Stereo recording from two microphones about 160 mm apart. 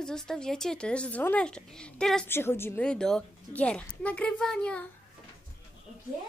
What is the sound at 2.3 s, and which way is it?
A woman's voice, 15° left (ahead or behind).